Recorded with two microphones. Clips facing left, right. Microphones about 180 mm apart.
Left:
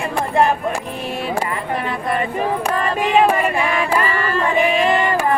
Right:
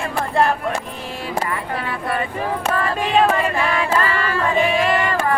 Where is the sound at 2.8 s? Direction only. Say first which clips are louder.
Left 2 dB; 15° left (ahead or behind).